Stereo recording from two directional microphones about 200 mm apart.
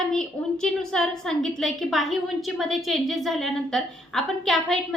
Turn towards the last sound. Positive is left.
turn(degrees=0)  # may be behind; listen again after turning